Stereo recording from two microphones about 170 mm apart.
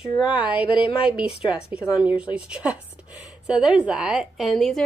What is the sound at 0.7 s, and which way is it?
Speech, 30° left (ahead or behind).